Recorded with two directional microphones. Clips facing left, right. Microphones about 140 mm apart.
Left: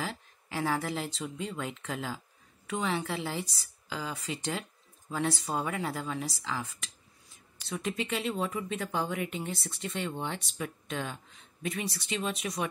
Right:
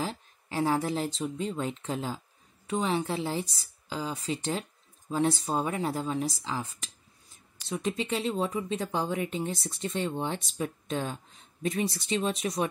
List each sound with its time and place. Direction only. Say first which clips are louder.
0.0 s speech: right 3 dB; 25° right (ahead or behind)
7.8 s speech: right 2 dB; 30° right (ahead or behind)